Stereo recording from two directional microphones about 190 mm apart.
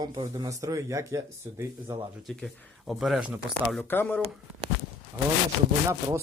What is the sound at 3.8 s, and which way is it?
Speech, 10° left (ahead or behind).